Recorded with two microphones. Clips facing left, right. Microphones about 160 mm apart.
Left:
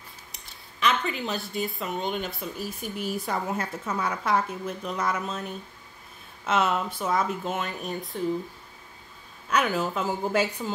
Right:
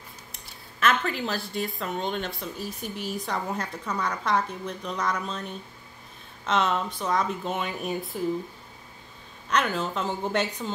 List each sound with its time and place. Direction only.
0.3 s speech: centre (ahead or behind)
9.5 s a woman's voice: 5° left (ahead or behind)